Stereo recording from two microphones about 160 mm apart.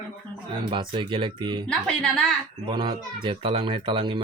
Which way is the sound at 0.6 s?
30° right (ahead or behind).